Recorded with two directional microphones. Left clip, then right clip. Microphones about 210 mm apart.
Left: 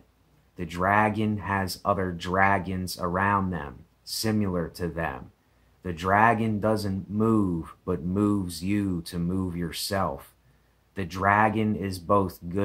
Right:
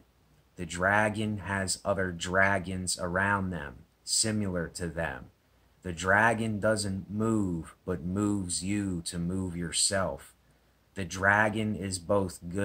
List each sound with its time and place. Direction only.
0.6 s speech: 10° right (ahead or behind)